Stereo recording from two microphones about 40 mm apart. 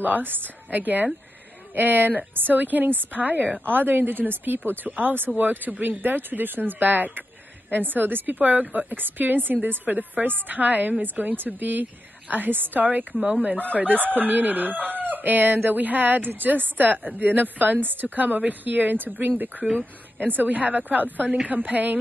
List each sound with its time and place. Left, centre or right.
0.0 s a woman's voice: right
3.6 s a woman's voice: right
12.8 s a woman's voice: right
13.2 s speech: right
13.7 s a woman's voice: right